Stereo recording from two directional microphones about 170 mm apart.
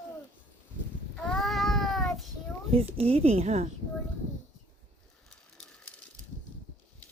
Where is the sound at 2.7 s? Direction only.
35° right (ahead or behind).